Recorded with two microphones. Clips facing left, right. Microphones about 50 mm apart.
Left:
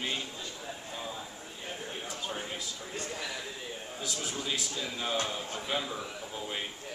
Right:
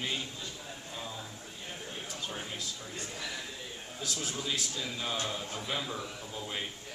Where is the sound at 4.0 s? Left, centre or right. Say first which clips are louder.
Even; centre.